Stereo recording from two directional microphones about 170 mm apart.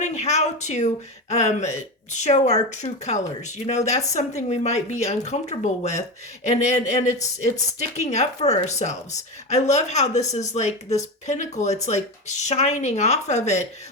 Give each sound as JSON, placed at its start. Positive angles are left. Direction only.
{"t": 0.0, "sound": "a woman's voice", "side_deg": 40}